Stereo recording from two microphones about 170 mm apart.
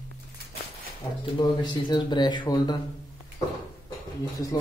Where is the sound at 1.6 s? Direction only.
25° left (ahead or behind).